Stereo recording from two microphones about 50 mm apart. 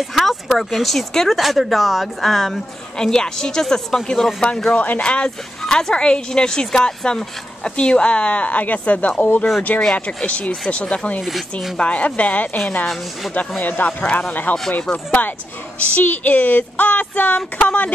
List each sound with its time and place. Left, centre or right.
0.1 s speech: centre
4.7 s speech: left
12.8 s speech: centre
13.6 s speech: left
14.0 s speech: left